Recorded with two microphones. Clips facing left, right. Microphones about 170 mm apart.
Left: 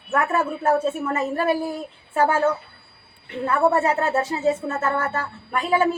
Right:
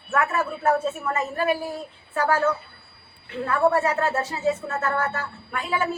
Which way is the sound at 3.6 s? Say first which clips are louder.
Left 1 dB; 25° left (ahead or behind).